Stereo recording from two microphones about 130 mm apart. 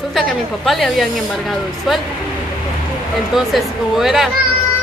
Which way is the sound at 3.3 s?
5° right (ahead or behind).